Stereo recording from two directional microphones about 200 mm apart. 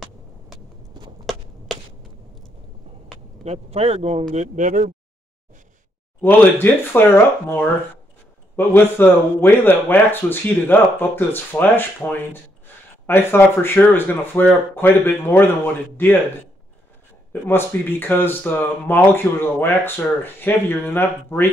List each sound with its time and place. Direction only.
3.4 s speech: 30° right (ahead or behind)
6.2 s speech: 10° left (ahead or behind)
17.3 s speech: 10° left (ahead or behind)